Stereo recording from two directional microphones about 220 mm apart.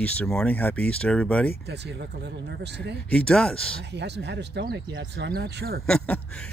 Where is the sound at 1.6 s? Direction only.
50° right (ahead or behind).